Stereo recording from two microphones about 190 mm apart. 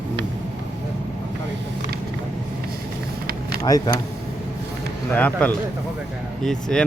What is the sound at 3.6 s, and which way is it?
Speech, 20° left (ahead or behind).